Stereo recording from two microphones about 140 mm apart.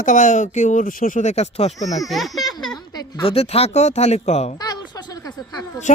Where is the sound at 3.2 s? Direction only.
45° left (ahead or behind).